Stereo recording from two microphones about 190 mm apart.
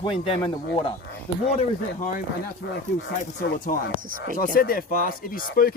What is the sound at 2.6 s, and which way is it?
Speech, 65° left (ahead or behind).